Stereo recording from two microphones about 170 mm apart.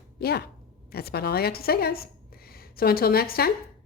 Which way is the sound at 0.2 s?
70° left (ahead or behind).